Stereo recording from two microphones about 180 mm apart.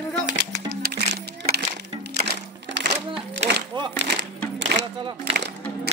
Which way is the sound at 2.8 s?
80° right.